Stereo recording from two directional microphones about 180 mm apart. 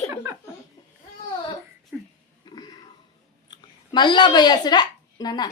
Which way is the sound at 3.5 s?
25° left (ahead or behind).